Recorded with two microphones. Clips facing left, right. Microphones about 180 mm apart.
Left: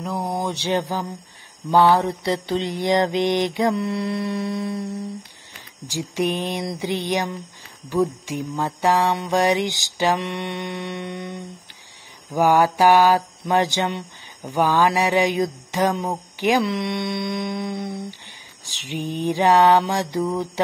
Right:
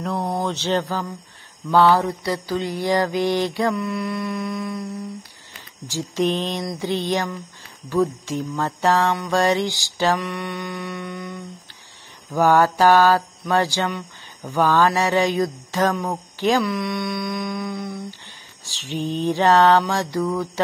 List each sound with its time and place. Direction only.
0.0 s speech: 5° left (ahead or behind)
1.7 s mantra: 15° left (ahead or behind)
5.9 s speech: 15° left (ahead or behind)
10.2 s mantra: 25° left (ahead or behind)
12.3 s speech: 15° left (ahead or behind)
16.6 s mantra: 25° left (ahead or behind)
18.7 s speech: 15° left (ahead or behind)